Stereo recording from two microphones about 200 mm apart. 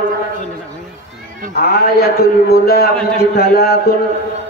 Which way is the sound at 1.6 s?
50° left (ahead or behind).